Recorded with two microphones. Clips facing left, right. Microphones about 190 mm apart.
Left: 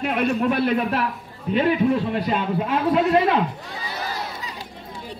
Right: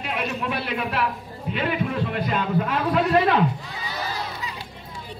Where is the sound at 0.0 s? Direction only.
50° left (ahead or behind).